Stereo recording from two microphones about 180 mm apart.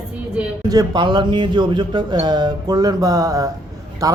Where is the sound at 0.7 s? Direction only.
20° right (ahead or behind).